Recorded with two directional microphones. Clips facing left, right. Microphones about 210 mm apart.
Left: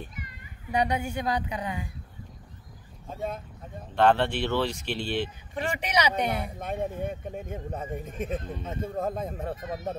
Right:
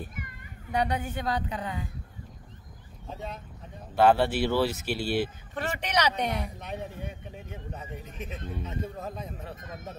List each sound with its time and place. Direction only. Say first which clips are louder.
0.7 s speech: left 2 dB; 10° left (ahead or behind)
3.9 s speech: right 1 dB; 10° right (ahead or behind)
5.5 s speech: left 2 dB; 10° left (ahead or behind)
6.6 s speech: left 6 dB; 50° left (ahead or behind)